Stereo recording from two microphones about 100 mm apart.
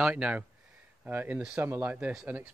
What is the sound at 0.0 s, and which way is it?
A man's voice, 10° right (ahead or behind).